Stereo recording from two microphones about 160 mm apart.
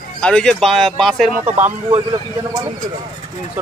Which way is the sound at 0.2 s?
5° left (ahead or behind).